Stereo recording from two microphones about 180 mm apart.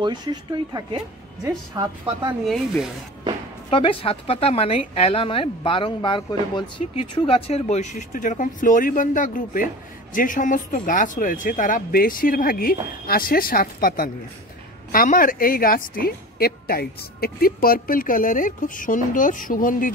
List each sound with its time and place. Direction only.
0.0 s speech: 25° right (ahead or behind)
2.4 s speech: centre (ahead or behind)
3.7 s a woman's voice: 30° left (ahead or behind)
6.8 s a woman's voice: 35° left (ahead or behind)